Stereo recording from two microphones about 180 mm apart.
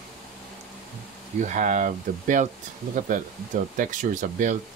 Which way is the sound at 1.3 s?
45° right (ahead or behind).